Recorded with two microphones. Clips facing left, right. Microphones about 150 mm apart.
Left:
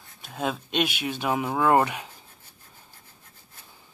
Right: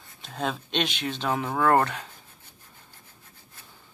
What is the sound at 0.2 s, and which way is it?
Speech, 5° left (ahead or behind).